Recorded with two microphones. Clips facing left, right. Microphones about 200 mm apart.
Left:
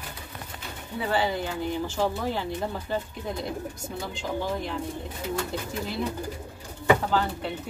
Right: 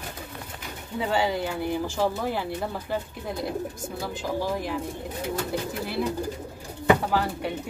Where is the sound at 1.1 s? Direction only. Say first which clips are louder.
Right 1 dB; 15° right (ahead or behind).